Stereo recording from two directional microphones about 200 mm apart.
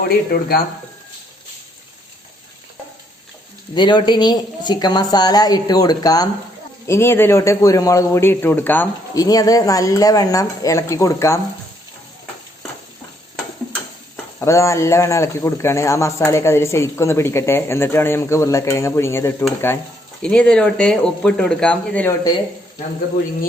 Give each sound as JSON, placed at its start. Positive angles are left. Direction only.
{"t": 0.3, "sound": "speech", "side_deg": 50}
{"t": 3.8, "sound": "a woman's voice", "side_deg": 25}
{"t": 14.3, "sound": "a man's voice", "side_deg": 15}